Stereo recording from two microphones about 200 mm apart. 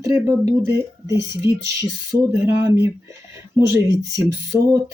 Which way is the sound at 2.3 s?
15° right (ahead or behind).